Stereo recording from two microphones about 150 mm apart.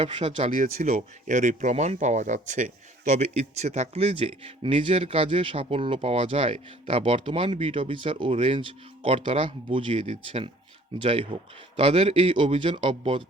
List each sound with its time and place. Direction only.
0.0 s speech: 45° right (ahead or behind)
0.5 s speech: 65° right (ahead or behind)
0.9 s speech: 50° right (ahead or behind); by 13.2 s 35° right (ahead or behind)